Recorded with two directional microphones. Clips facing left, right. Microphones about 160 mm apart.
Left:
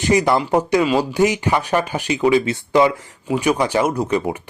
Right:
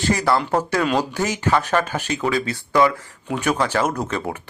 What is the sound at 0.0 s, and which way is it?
Speech, 15° left (ahead or behind).